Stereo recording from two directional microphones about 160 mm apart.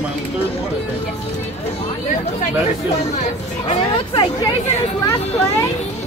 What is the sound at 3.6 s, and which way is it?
Speech, 30° left (ahead or behind).